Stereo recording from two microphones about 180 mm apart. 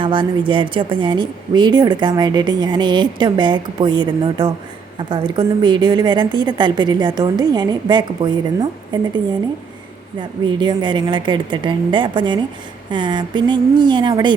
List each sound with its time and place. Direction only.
0.0 s a woman's voice: 30° right (ahead or behind)
10.2 s a woman's voice: 25° right (ahead or behind)